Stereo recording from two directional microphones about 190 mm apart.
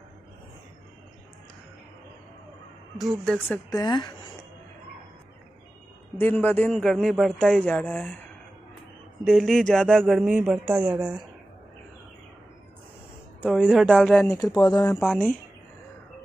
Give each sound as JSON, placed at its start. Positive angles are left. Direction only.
{"t": 3.0, "sound": "a man's voice", "side_deg": 0}
{"t": 3.4, "sound": "speech", "side_deg": 20}
{"t": 6.1, "sound": "a man's voice", "side_deg": 10}
{"t": 9.2, "sound": "a man's voice", "side_deg": 0}
{"t": 13.4, "sound": "a man's voice", "side_deg": 5}
{"t": 14.7, "sound": "speech", "side_deg": 20}
{"t": 15.0, "sound": "a man's voice", "side_deg": 5}